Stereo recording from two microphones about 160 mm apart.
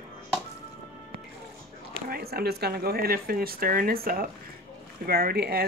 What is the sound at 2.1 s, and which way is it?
Speech, 75° right (ahead or behind).